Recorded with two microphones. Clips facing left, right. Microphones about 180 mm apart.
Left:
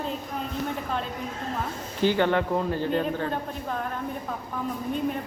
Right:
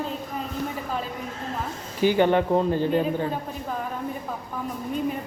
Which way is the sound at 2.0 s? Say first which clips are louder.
Right 3 dB; 15° right (ahead or behind).